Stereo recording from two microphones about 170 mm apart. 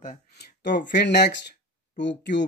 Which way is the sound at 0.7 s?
90° left.